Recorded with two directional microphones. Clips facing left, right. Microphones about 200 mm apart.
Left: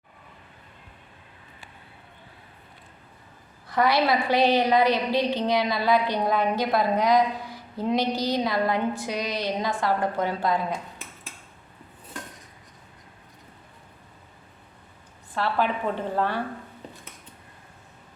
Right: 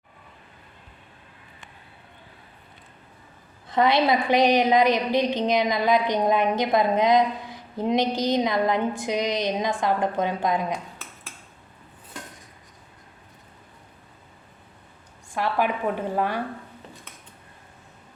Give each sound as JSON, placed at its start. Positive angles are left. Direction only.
{"t": 3.7, "sound": "a woman's voice", "side_deg": -20}
{"t": 15.4, "sound": "a woman's voice", "side_deg": -15}